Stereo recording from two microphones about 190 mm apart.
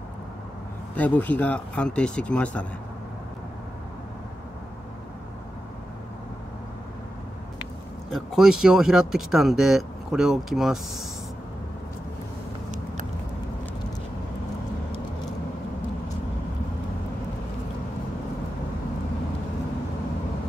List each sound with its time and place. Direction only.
0.9 s speech: 10° left (ahead or behind)
8.1 s speech: 5° right (ahead or behind)